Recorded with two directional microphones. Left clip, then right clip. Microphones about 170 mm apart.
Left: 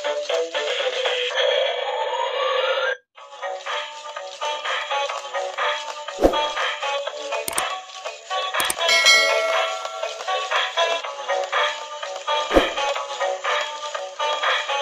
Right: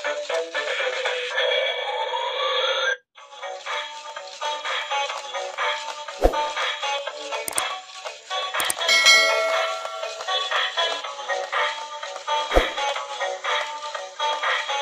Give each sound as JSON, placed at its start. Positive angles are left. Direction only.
{"t": 0.3, "sound": "music", "side_deg": 50}
{"t": 2.0, "sound": "a sound", "side_deg": 30}
{"t": 4.8, "sound": "music", "side_deg": 40}
{"t": 8.8, "sound": "bell", "side_deg": 0}
{"t": 10.3, "sound": "music", "side_deg": 35}